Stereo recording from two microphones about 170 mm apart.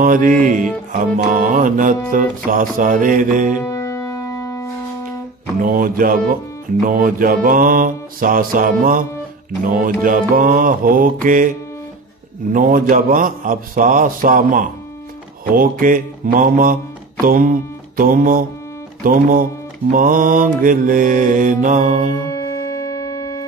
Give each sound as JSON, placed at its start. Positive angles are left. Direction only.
{"t": 0.0, "sound": "mantra", "side_deg": -55}
{"t": 3.5, "sound": "music", "side_deg": 20}
{"t": 5.6, "sound": "mantra", "side_deg": -55}
{"t": 12.5, "sound": "mantra", "side_deg": -55}
{"t": 17.2, "sound": "music", "side_deg": -55}
{"t": 19.0, "sound": "mantra", "side_deg": -55}
{"t": 22.3, "sound": "music", "side_deg": 20}